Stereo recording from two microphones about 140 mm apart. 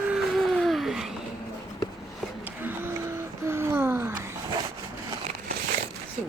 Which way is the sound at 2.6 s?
15° right (ahead or behind).